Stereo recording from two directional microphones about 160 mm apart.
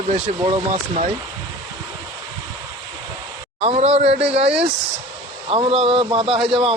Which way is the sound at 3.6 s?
40° right (ahead or behind).